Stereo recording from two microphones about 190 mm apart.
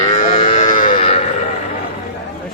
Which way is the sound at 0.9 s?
30° left (ahead or behind).